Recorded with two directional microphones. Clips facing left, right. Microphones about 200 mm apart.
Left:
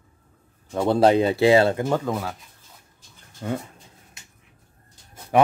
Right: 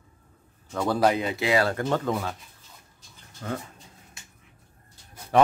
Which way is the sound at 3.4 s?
20° left (ahead or behind).